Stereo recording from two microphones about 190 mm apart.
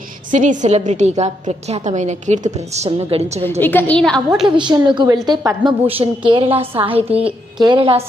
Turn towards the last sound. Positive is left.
turn(degrees=-25)  # may be behind; listen again after turning